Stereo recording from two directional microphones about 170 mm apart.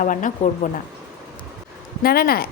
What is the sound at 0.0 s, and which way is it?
Speech, 50° left (ahead or behind).